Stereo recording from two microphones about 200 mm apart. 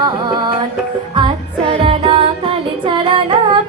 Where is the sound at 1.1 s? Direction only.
25° right (ahead or behind).